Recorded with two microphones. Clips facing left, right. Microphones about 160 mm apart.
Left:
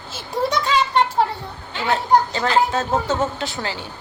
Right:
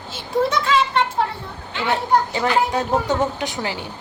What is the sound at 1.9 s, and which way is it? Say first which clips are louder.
A woman's voice: left 2 dB; 15° right (ahead or behind).